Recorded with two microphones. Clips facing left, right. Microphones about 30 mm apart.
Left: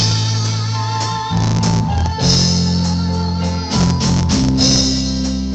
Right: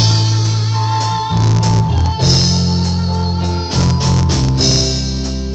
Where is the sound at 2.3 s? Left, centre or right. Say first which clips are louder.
Even; right.